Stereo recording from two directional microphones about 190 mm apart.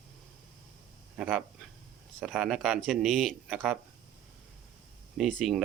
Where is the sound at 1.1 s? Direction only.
5° right (ahead or behind).